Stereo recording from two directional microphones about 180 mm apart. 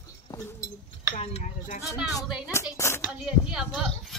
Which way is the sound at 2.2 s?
5° right (ahead or behind).